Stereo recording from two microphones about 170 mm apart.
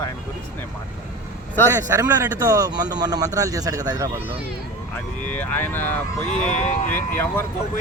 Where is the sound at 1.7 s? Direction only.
20° right (ahead or behind).